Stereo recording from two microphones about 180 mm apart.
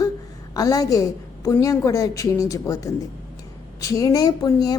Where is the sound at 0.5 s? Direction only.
20° left (ahead or behind).